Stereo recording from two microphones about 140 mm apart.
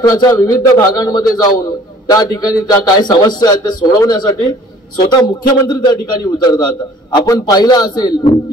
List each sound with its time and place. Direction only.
0.0 s a man's voice: 25° left (ahead or behind)